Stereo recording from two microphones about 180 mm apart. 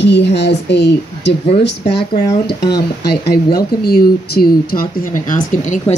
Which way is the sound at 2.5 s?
20° left (ahead or behind).